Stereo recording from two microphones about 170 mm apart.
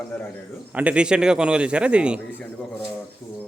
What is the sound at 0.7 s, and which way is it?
A man's voice, 10° right (ahead or behind).